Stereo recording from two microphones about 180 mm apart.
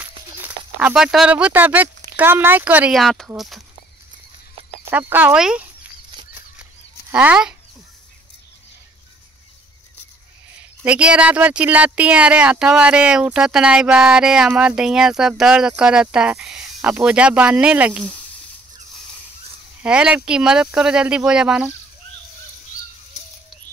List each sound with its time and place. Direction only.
0.0 s a sound: 10° right (ahead or behind)
2.0 s speech: 10° right (ahead or behind)
4.9 s speech: 10° right (ahead or behind)
7.1 s speech: 5° right (ahead or behind)
10.8 s speech: 5° right (ahead or behind)
19.8 s speech: 5° right (ahead or behind)